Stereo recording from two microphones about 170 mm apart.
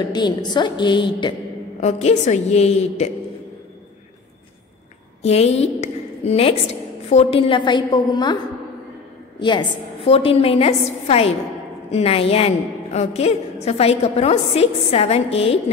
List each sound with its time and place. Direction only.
0.0 s a woman's voice: 25° left (ahead or behind)
1.8 s a woman's voice: 40° left (ahead or behind)
5.2 s a woman's voice: 40° left (ahead or behind)
9.4 s a woman's voice: 25° left (ahead or behind)